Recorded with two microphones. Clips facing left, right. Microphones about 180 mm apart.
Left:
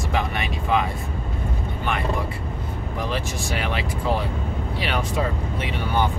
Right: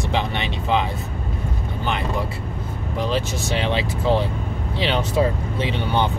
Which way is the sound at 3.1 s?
25° right (ahead or behind).